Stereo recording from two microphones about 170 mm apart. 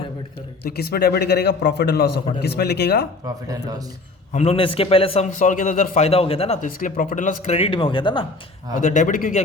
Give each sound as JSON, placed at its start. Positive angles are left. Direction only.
{"t": 0.8, "sound": "a man's voice", "side_deg": 65}
{"t": 3.2, "sound": "speech", "side_deg": -20}
{"t": 4.4, "sound": "a man's voice", "side_deg": 35}
{"t": 5.4, "sound": "speech", "side_deg": 50}
{"t": 6.1, "sound": "a man's voice", "side_deg": 35}
{"t": 6.6, "sound": "speech", "side_deg": 55}
{"t": 8.7, "sound": "speech", "side_deg": 50}